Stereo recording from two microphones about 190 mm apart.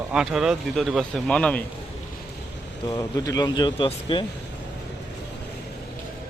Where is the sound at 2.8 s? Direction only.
20° left (ahead or behind).